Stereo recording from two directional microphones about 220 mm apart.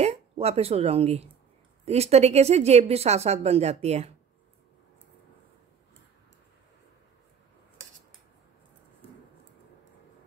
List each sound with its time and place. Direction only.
0.0 s speech: 30° right (ahead or behind)